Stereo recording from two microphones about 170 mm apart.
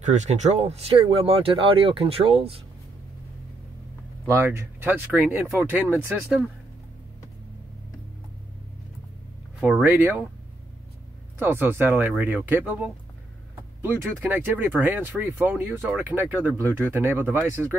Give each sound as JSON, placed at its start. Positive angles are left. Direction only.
{"t": 0.0, "sound": "speech", "side_deg": -45}
{"t": 4.3, "sound": "speech", "side_deg": -15}
{"t": 9.6, "sound": "speech", "side_deg": -5}
{"t": 11.3, "sound": "speech", "side_deg": -15}
{"t": 14.2, "sound": "speech", "side_deg": -10}